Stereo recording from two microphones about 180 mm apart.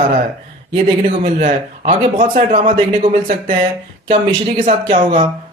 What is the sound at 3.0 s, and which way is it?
Speech, 40° right (ahead or behind).